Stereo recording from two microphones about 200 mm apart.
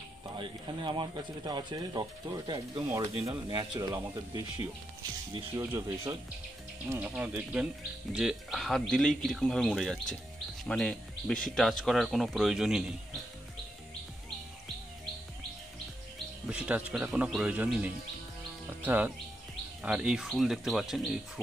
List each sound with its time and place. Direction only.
0.4 s speech: 25° right (ahead or behind); by 12.9 s centre (ahead or behind)
16.4 s speech: 5° right (ahead or behind)